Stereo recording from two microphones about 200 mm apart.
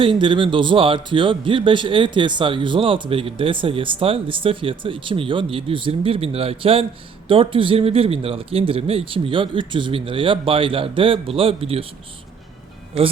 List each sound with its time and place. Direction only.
0.0 s a man's voice: 25° right (ahead or behind)